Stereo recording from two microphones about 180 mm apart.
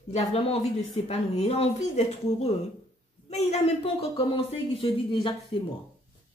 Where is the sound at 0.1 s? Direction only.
35° left (ahead or behind).